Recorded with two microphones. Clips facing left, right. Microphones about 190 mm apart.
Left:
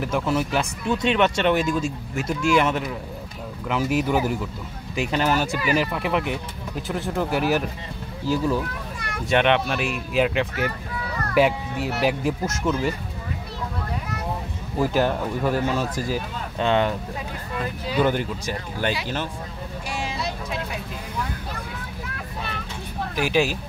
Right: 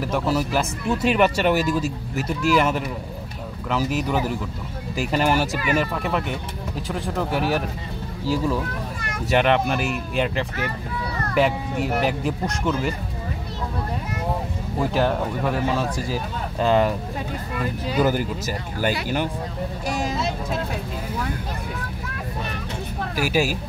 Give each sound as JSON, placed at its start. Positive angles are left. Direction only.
{"t": 0.1, "sound": "speech", "side_deg": 0}
{"t": 5.7, "sound": "speech", "side_deg": 5}
{"t": 9.3, "sound": "speech", "side_deg": 0}
{"t": 14.8, "sound": "speech", "side_deg": 0}
{"t": 17.9, "sound": "speech", "side_deg": -5}
{"t": 19.9, "sound": "vehicle", "side_deg": -40}
{"t": 23.1, "sound": "speech", "side_deg": -5}